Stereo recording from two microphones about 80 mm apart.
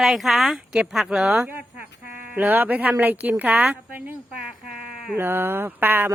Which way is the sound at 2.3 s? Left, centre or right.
Centre.